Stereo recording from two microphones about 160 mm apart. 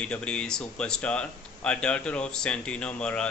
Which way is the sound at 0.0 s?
5° left (ahead or behind).